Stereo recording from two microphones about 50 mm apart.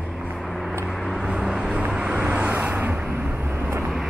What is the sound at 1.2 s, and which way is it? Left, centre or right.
Vehicle, centre.